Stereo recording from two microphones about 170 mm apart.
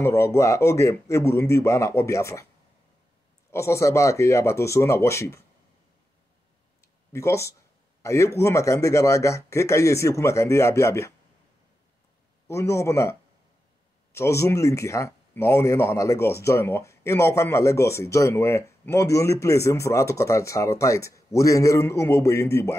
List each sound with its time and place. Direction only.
0.0 s speech: 15° left (ahead or behind)
3.5 s speech: 15° left (ahead or behind)
6.8 s a sound: 15° left (ahead or behind)
8.0 s speech: 15° left (ahead or behind)
12.4 s speech: 15° left (ahead or behind)
14.1 s speech: 15° left (ahead or behind)